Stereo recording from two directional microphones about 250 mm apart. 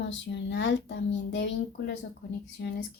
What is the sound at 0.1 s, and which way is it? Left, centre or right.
A woman's voice, left.